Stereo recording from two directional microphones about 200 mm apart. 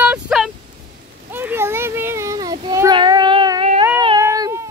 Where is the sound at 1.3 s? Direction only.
10° right (ahead or behind).